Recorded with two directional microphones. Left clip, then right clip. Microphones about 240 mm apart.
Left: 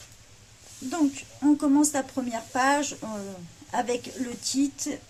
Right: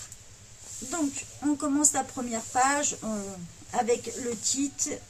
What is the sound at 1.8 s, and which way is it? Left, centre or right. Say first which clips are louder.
Speech: left 2 dB; left.